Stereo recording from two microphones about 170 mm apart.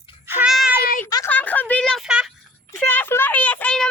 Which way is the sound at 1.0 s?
20° left (ahead or behind).